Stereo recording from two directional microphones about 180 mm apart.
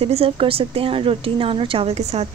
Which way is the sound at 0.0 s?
35° right (ahead or behind).